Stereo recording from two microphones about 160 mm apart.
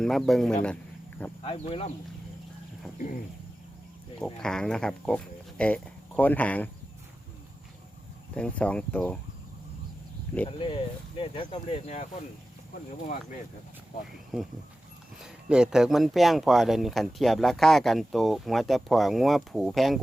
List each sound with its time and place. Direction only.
0.0 s speech: centre (ahead or behind)
1.5 s speech: 35° left (ahead or behind)
4.2 s speech: 5° left (ahead or behind)
8.4 s speech: 10° left (ahead or behind)
11.2 s speech: 35° left (ahead or behind)
14.3 s speech: centre (ahead or behind)